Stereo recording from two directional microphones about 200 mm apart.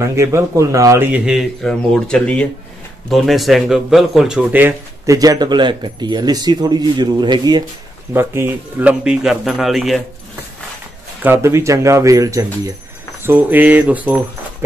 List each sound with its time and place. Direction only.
0.0 s speech: 15° right (ahead or behind)
11.2 s speech: 15° right (ahead or behind)